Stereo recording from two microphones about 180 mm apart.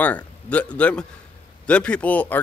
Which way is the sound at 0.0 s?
10° left (ahead or behind).